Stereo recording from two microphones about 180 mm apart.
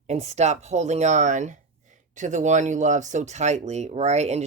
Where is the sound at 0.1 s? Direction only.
35° right (ahead or behind).